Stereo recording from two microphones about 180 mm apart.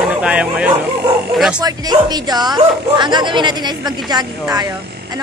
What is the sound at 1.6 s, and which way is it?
Speech, 20° right (ahead or behind).